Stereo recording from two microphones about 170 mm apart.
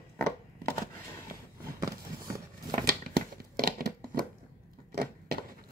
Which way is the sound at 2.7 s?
60° right (ahead or behind).